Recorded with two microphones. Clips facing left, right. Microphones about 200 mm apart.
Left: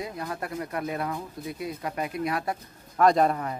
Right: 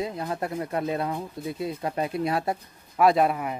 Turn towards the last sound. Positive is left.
turn(degrees=-10)  # may be behind; listen again after turning